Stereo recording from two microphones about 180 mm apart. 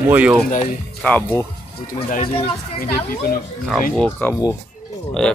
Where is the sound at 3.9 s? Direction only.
5° left (ahead or behind).